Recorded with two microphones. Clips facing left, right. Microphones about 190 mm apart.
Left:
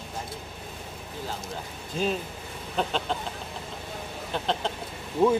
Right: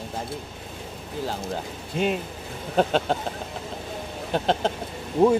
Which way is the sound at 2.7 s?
45° right (ahead or behind).